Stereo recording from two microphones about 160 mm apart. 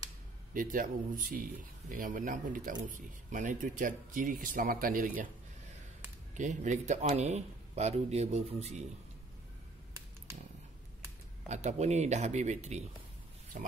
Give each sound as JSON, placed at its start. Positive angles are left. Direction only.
{"t": 0.5, "sound": "speech", "side_deg": -55}
{"t": 6.3, "sound": "a man's voice", "side_deg": -50}
{"t": 11.4, "sound": "a man's voice", "side_deg": -45}